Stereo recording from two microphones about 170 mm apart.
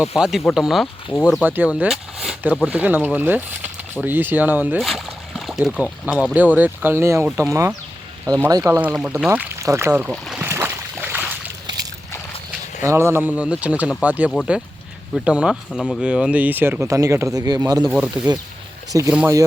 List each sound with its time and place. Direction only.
0.0 s speech: 5° right (ahead or behind)
4.8 s speech: centre (ahead or behind); by 8.6 s 20° right (ahead or behind)
8.6 s speech: 10° right (ahead or behind)
10.1 s speech: centre (ahead or behind)
10.4 s a sound: 15° right (ahead or behind)
12.8 s speech: 15° right (ahead or behind)
17.8 s speech: 5° right (ahead or behind)
18.9 s speech: 20° right (ahead or behind)